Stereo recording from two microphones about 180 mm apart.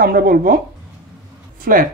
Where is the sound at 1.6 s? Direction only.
50° right (ahead or behind).